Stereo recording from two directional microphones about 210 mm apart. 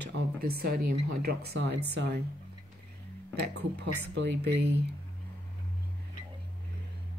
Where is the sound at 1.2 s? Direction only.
50° right (ahead or behind).